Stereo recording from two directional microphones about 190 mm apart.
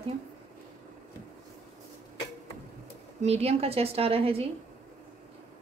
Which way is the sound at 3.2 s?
35° right (ahead or behind).